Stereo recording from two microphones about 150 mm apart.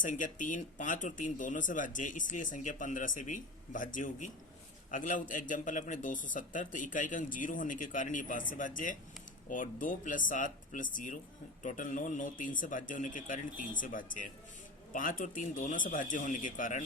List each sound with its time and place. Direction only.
0.0 s speech: 60° left (ahead or behind)